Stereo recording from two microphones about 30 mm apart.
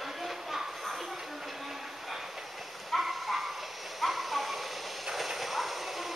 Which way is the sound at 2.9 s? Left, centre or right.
Centre.